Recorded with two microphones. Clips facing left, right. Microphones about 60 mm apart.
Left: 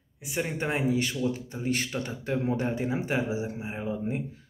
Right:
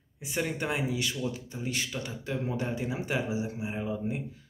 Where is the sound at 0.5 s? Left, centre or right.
Left.